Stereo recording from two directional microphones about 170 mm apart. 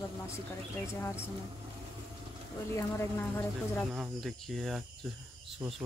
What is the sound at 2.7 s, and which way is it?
Speech, 15° left (ahead or behind).